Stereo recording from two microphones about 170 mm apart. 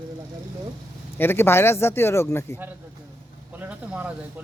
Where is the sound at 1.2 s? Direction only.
15° left (ahead or behind).